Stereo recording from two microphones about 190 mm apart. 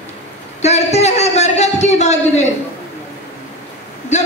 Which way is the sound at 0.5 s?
35° left (ahead or behind).